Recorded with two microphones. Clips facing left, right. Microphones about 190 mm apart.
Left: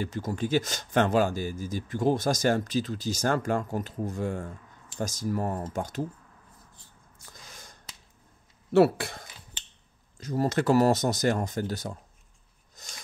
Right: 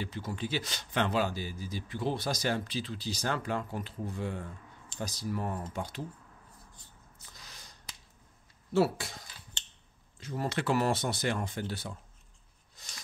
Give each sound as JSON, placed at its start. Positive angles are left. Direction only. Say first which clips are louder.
{"t": 0.0, "sound": "speech", "louder": "left 6 dB", "side_deg": 45}
{"t": 7.3, "sound": "finger snapping", "louder": "left 5 dB", "side_deg": 50}
{"t": 8.7, "sound": "speech", "louder": "left 7 dB", "side_deg": 60}
{"t": 10.1, "sound": "speech", "louder": "left 7 dB", "side_deg": 40}
{"t": 12.8, "sound": "filing", "louder": "left 5 dB", "side_deg": 45}